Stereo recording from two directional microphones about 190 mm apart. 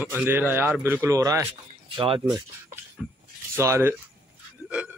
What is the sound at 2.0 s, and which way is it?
Speech, 30° right (ahead or behind).